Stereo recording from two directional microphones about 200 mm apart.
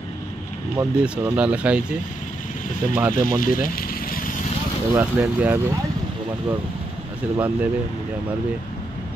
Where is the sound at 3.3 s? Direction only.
45° left (ahead or behind).